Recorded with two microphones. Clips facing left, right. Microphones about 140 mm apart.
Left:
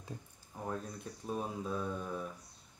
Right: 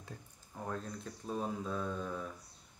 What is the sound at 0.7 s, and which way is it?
Speech, 10° left (ahead or behind).